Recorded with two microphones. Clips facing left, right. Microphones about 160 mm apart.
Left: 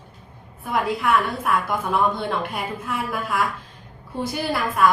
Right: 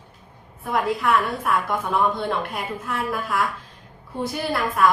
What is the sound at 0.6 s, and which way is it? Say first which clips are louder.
A woman's voice: even; centre (ahead or behind).